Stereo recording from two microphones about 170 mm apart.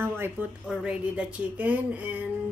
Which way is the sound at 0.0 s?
15° right (ahead or behind).